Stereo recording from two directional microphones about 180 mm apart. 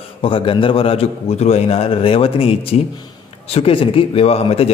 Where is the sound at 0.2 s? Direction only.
30° left (ahead or behind).